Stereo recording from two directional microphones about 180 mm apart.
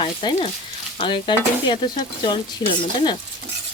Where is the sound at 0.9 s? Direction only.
25° left (ahead or behind).